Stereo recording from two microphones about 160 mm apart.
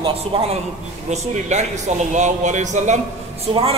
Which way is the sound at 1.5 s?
45° right (ahead or behind).